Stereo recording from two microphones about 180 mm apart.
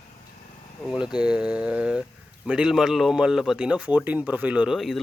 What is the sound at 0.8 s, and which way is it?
Speech, 5° right (ahead or behind).